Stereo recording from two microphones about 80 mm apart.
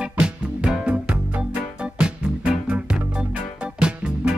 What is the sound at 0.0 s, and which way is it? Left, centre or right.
Music, centre.